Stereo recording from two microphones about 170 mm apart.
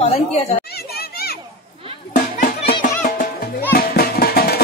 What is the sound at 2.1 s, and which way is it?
Music, 50° left (ahead or behind).